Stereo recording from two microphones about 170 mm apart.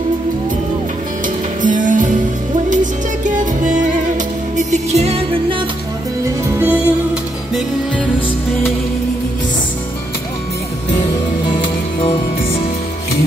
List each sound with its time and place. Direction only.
1.6 s music: 50° right (ahead or behind)
6.2 s music: 15° right (ahead or behind)